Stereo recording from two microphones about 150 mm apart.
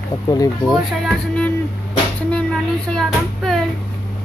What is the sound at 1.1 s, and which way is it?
Music, 5° left (ahead or behind).